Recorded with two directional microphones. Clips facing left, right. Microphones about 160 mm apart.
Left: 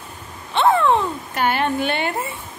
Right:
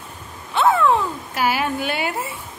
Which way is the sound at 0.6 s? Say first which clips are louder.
Left 1 dB; centre (ahead or behind).